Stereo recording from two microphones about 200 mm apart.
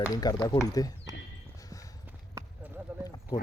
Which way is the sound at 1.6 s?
15° left (ahead or behind).